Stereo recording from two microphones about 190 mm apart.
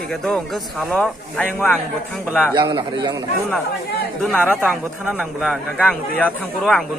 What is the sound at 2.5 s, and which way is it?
Speech, 25° right (ahead or behind).